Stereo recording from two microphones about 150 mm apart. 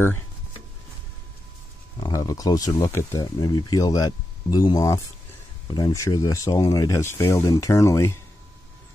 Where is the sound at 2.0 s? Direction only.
25° left (ahead or behind).